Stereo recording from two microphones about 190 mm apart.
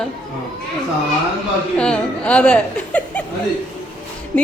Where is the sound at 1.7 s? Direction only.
5° left (ahead or behind).